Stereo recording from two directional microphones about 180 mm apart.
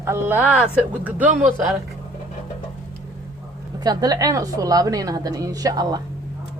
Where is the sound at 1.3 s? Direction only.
45° right (ahead or behind).